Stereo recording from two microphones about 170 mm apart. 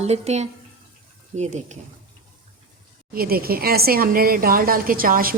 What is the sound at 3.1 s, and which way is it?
Speech, 60° right (ahead or behind).